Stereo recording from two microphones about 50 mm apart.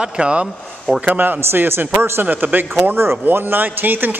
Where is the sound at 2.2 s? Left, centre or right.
Right.